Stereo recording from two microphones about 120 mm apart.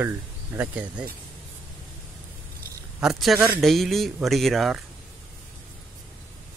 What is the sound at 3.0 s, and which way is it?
Speech, centre (ahead or behind).